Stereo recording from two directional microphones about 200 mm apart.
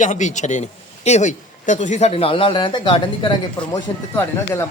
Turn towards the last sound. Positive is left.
turn(degrees=15)  # may be behind; listen again after turning